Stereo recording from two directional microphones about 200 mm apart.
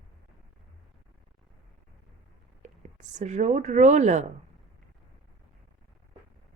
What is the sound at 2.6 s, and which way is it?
Speech, 40° right (ahead or behind).